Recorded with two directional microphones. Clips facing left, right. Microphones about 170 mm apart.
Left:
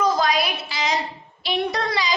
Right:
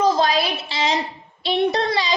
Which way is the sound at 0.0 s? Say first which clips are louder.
Right 2 dB; 30° right (ahead or behind).